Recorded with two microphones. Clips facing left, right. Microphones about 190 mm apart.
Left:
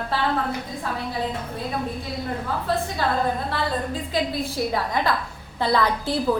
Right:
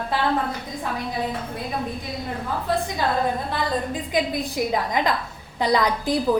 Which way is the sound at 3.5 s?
15° right (ahead or behind).